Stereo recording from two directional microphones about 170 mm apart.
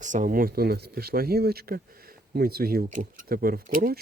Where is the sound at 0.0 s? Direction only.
50° right (ahead or behind).